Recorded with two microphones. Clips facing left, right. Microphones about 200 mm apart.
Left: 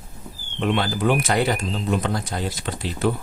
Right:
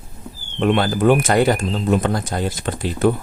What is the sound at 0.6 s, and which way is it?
Speech, 50° right (ahead or behind).